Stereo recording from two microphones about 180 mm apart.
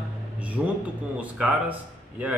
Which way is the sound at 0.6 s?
5° right (ahead or behind).